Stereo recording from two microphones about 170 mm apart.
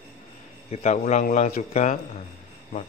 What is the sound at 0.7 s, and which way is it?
Speech, 45° left (ahead or behind).